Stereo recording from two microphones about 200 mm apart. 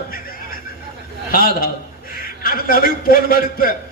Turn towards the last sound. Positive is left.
turn(degrees=45)  # may be behind; listen again after turning